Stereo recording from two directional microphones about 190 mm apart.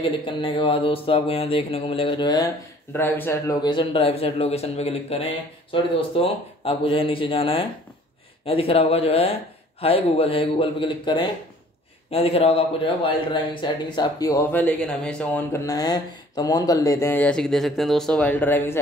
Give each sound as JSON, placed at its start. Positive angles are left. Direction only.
{"t": 0.0, "sound": "speech", "side_deg": 25}
{"t": 2.9, "sound": "a man's voice", "side_deg": 10}